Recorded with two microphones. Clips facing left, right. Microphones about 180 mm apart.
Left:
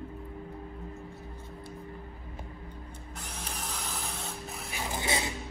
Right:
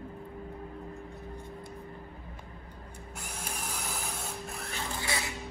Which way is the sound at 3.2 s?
10° right (ahead or behind).